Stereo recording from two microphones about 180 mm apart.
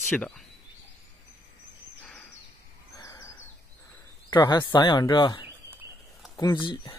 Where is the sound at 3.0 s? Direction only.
20° left (ahead or behind).